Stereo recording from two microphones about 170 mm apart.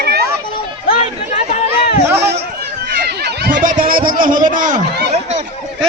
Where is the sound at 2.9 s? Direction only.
70° right (ahead or behind).